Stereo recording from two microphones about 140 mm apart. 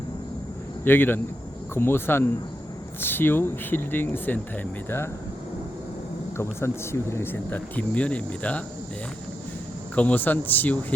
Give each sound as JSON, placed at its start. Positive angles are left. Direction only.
{"t": 0.9, "sound": "speech", "side_deg": 15}
{"t": 6.3, "sound": "speech", "side_deg": 20}
{"t": 9.9, "sound": "speech", "side_deg": 10}